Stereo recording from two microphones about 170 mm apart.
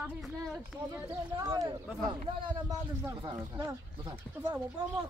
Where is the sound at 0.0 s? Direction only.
Centre (ahead or behind).